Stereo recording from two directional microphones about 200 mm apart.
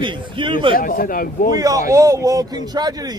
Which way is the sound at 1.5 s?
20° right (ahead or behind).